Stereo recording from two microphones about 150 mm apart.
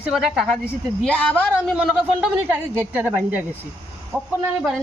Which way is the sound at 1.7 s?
5° right (ahead or behind).